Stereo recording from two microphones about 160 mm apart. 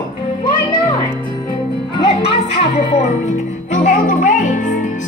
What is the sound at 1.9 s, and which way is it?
Music, 35° left (ahead or behind).